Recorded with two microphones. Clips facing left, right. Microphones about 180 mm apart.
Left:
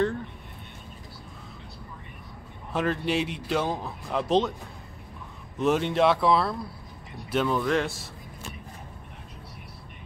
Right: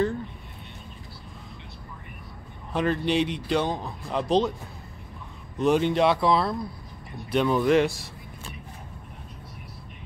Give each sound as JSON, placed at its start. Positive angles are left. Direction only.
{"t": 2.7, "sound": "speech", "side_deg": 0}
{"t": 5.6, "sound": "speech", "side_deg": 0}
{"t": 7.5, "sound": "speech", "side_deg": -15}